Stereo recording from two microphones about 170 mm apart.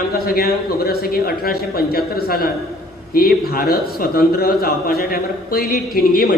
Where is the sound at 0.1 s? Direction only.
65° left (ahead or behind).